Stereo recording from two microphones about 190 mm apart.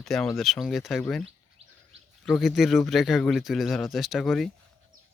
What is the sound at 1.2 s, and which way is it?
Bird, 30° right (ahead or behind).